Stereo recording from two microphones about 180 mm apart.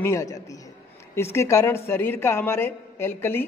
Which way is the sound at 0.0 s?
15° left (ahead or behind).